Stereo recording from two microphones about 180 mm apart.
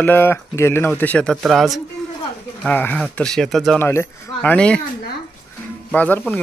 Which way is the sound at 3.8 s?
15° left (ahead or behind).